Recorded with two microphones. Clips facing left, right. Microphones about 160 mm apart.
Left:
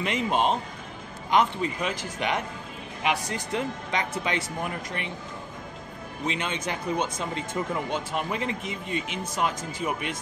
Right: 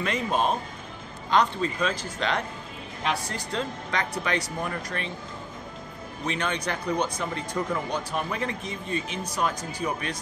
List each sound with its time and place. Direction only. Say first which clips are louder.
0.0 s speech: left 1 dB; 20° left (ahead or behind)
6.2 s speech: right 1 dB; 20° left (ahead or behind)